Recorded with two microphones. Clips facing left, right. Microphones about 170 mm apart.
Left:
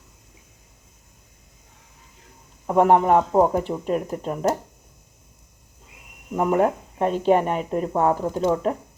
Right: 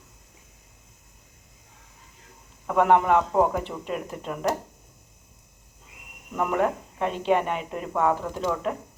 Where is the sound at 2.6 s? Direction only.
35° left (ahead or behind).